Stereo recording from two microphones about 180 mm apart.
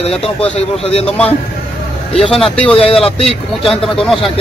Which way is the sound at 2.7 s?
30° left (ahead or behind).